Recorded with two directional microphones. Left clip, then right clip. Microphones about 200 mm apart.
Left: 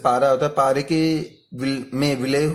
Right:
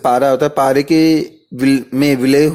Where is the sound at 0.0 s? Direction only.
40° right (ahead or behind).